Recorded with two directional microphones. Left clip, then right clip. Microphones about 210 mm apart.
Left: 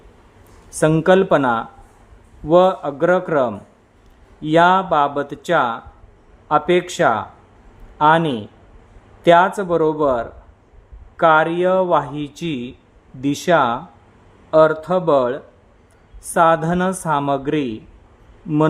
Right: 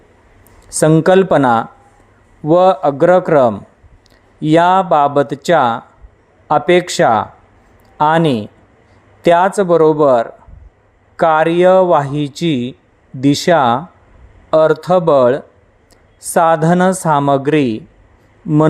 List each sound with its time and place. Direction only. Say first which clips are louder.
0.7 s speech: right 4 dB; 25° right (ahead or behind)